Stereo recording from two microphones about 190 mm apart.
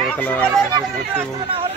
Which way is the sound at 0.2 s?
5° left (ahead or behind).